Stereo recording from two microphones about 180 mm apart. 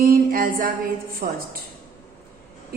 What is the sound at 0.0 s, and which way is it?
Music, 50° right (ahead or behind).